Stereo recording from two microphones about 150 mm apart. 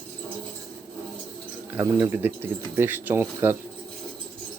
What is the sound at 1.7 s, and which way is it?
Speech, 10° right (ahead or behind).